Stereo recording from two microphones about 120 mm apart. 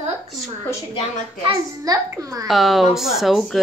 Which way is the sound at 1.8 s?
30° right (ahead or behind).